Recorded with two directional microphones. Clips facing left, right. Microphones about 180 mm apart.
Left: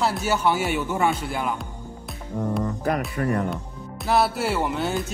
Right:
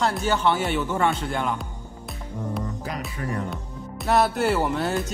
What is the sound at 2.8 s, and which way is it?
Speech, 55° left (ahead or behind).